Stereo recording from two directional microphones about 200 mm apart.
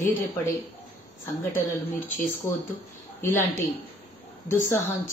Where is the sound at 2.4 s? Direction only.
15° left (ahead or behind).